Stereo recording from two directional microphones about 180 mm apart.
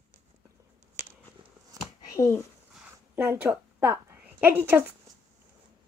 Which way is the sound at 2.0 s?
20° left (ahead or behind).